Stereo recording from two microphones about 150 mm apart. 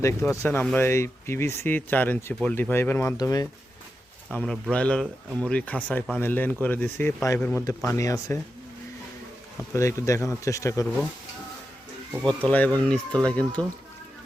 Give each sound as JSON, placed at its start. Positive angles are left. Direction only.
{"t": 0.0, "sound": "speech", "side_deg": 20}
{"t": 4.3, "sound": "speech", "side_deg": 10}
{"t": 7.6, "sound": "speech", "side_deg": 20}
{"t": 9.7, "sound": "speech", "side_deg": 20}
{"t": 12.2, "sound": "speech", "side_deg": 5}